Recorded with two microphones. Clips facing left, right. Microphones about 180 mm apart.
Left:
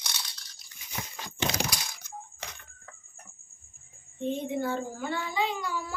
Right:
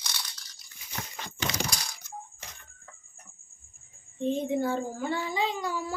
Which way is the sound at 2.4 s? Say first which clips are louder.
Left 5 dB; 70° left (ahead or behind).